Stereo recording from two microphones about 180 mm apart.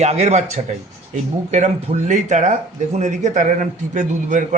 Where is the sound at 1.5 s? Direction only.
40° right (ahead or behind).